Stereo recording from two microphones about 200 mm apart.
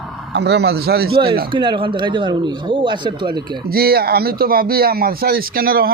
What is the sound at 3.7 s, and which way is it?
Speech, 50° right (ahead or behind).